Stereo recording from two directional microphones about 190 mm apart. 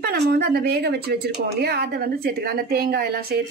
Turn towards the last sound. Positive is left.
turn(degrees=-55)  # may be behind; listen again after turning